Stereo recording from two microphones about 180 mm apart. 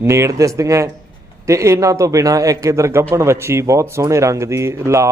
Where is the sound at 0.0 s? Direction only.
15° right (ahead or behind).